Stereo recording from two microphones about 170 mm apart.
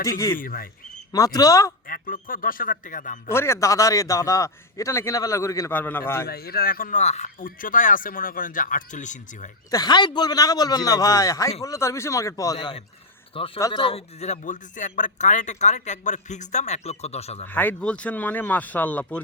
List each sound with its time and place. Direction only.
0.0 s speech: 20° left (ahead or behind)
0.3 s a man's voice: 55° left (ahead or behind)
1.1 s a man's voice: 20° left (ahead or behind)
1.9 s a man's voice: 55° left (ahead or behind)
3.3 s a man's voice: 15° left (ahead or behind)
6.2 s speech: 65° left (ahead or behind); by 9.5 s 45° left (ahead or behind)
9.6 s a man's voice: 20° left (ahead or behind); by 17.4 s 40° left (ahead or behind)
17.4 s speech: 10° left (ahead or behind)